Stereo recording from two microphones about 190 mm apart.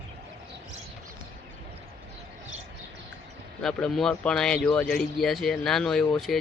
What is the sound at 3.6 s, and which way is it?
Speech, 5° left (ahead or behind).